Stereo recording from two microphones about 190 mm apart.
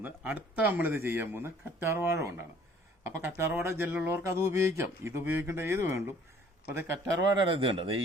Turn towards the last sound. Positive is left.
turn(degrees=-30)  # may be behind; listen again after turning